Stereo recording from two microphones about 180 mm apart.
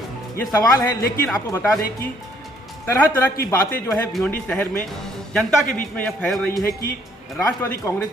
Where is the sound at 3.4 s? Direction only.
15° left (ahead or behind).